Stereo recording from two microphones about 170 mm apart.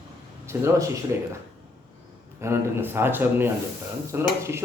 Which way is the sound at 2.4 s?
15° right (ahead or behind).